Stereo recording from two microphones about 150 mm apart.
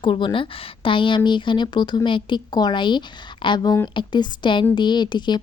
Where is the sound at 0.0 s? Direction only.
35° left (ahead or behind).